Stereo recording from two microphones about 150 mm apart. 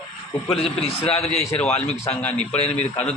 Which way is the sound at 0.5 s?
40° left (ahead or behind).